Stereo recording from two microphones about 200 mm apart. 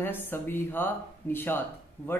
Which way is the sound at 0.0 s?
10° left (ahead or behind).